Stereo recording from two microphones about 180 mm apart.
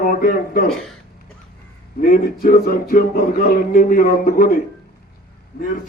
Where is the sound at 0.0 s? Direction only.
50° left (ahead or behind).